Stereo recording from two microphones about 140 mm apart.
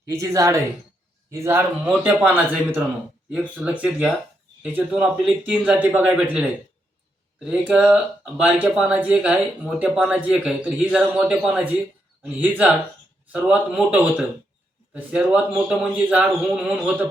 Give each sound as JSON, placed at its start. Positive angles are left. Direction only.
{"t": 0.1, "sound": "speech", "side_deg": -20}